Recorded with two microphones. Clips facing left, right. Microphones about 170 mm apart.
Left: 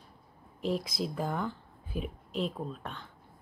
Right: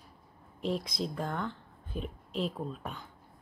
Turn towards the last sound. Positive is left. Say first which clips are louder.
# even
turn(degrees=-5)  # may be behind; listen again after turning